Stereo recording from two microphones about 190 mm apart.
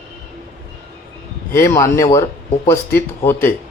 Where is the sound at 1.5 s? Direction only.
15° left (ahead or behind).